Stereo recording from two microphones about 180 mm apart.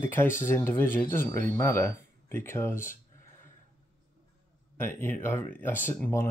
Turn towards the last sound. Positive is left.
turn(degrees=15)  # may be behind; listen again after turning